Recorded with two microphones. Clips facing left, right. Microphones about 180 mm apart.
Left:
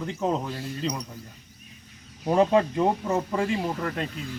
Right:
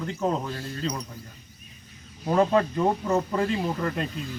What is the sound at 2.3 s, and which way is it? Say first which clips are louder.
Speech: left 1 dB; 15° left (ahead or behind).